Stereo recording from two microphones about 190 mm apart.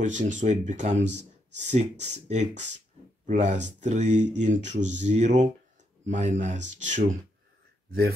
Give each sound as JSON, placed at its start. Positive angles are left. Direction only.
{"t": 0.0, "sound": "speech", "side_deg": -40}